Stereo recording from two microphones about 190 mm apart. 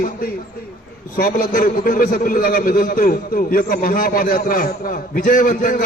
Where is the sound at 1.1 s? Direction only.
45° left (ahead or behind).